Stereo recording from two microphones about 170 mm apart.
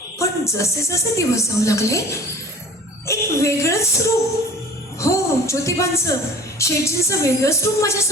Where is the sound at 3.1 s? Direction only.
15° left (ahead or behind).